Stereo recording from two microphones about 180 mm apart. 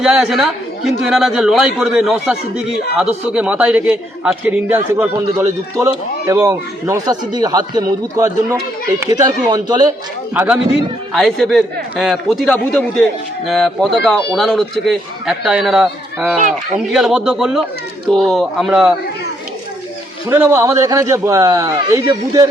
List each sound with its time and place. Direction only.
0.0 s a man's voice: 5° right (ahead or behind); by 9.9 s 20° right (ahead or behind)
10.3 s a man's voice: 10° right (ahead or behind)
11.1 s speech: centre (ahead or behind)
20.3 s a man's voice: 15° right (ahead or behind)